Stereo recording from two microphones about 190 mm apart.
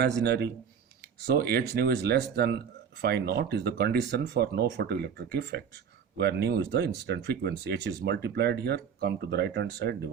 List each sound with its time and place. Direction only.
0.2 s speech: 60° right (ahead or behind)